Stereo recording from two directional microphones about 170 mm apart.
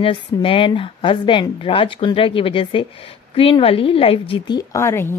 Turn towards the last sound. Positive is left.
turn(degrees=15)  # may be behind; listen again after turning